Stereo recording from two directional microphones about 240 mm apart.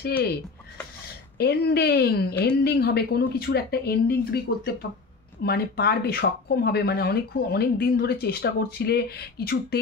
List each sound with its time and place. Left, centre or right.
1.4 s speech: left